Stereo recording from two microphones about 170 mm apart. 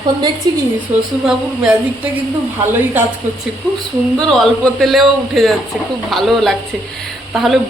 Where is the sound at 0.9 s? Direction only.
15° right (ahead or behind).